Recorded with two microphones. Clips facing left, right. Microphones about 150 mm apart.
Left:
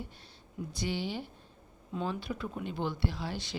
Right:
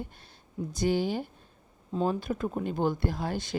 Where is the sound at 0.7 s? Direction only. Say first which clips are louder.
Right 8 dB; 45° right (ahead or behind).